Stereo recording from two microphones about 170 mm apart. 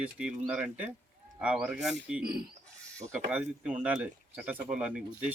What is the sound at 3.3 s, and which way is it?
Speech, 5° right (ahead or behind).